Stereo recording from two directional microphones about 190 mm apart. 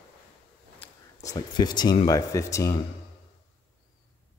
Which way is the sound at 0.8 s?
15° left (ahead or behind).